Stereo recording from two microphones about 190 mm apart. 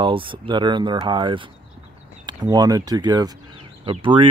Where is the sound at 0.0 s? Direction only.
25° right (ahead or behind).